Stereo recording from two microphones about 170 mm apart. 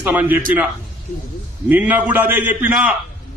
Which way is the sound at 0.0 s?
10° right (ahead or behind).